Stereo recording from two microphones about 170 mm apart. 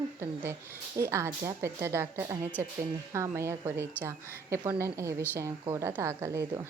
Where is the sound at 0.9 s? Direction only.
15° right (ahead or behind).